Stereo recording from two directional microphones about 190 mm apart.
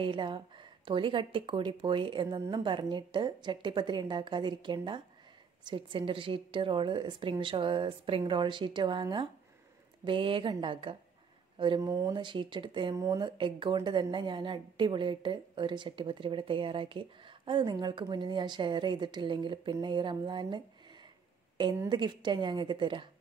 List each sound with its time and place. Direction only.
0.0 s speech: 25° right (ahead or behind)